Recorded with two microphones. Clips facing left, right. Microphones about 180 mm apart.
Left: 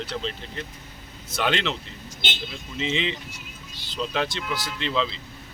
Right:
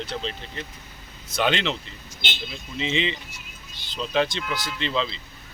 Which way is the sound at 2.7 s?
Centre (ahead or behind).